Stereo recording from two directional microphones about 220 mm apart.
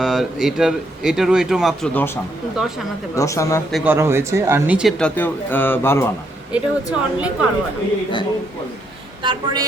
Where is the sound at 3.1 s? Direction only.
15° left (ahead or behind).